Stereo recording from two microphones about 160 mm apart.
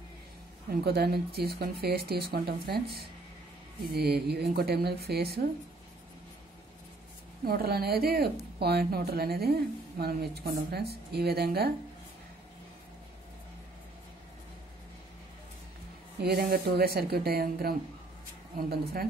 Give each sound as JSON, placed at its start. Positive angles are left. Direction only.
{"t": 0.8, "sound": "speech", "side_deg": -80}
{"t": 3.8, "sound": "a woman's voice", "side_deg": -85}
{"t": 7.4, "sound": "a woman's voice", "side_deg": -70}
{"t": 16.2, "sound": "speech", "side_deg": -80}